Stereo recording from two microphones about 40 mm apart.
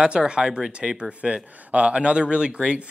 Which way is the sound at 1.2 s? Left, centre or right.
Right.